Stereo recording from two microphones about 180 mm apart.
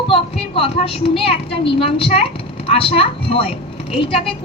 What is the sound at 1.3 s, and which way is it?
Speech, 30° left (ahead or behind).